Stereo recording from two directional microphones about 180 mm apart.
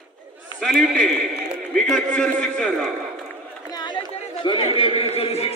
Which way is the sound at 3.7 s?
25° left (ahead or behind).